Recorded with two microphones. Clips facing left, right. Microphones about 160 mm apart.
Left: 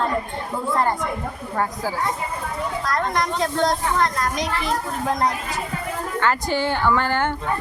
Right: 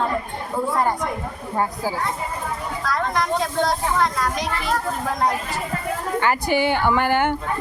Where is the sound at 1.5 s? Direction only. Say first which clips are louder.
Right 1 dB; 15° right (ahead or behind).